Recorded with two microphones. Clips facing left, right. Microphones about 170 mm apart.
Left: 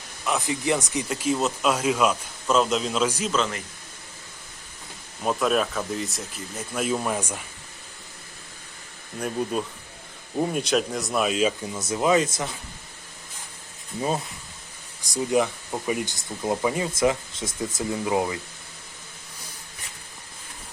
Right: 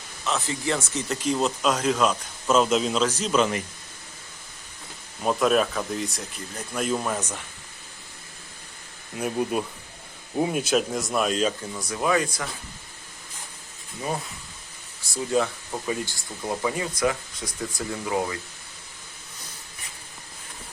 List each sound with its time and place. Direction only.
0.3 s speech: 15° left (ahead or behind)
3.3 s speech: 15° right (ahead or behind)
5.2 s speech: centre (ahead or behind)
9.1 s speech: 5° right (ahead or behind)
11.8 s speech: 20° left (ahead or behind)
15.0 s speech: 15° left (ahead or behind)